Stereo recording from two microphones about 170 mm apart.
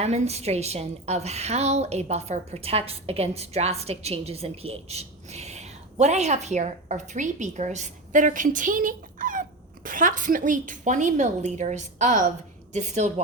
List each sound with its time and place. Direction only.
0.0 s a woman's voice: 40° right (ahead or behind)